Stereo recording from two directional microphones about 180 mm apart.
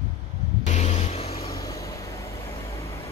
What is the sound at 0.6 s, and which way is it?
Vehicle, 40° left (ahead or behind).